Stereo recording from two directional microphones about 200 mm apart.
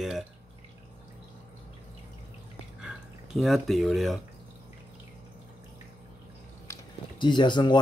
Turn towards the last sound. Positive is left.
turn(degrees=20)  # may be behind; listen again after turning